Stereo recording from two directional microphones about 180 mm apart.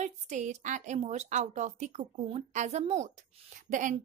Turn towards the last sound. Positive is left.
turn(degrees=-45)  # may be behind; listen again after turning